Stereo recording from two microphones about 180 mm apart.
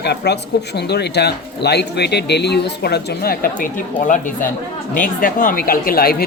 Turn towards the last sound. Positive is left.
turn(degrees=55)  # may be behind; listen again after turning